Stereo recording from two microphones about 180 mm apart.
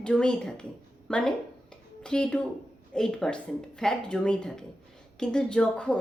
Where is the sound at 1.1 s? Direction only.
5° left (ahead or behind).